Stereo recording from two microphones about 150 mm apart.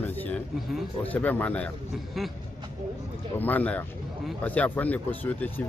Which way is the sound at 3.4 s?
10° left (ahead or behind).